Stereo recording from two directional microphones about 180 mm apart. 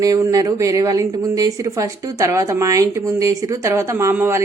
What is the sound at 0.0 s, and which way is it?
A woman's voice, 20° right (ahead or behind).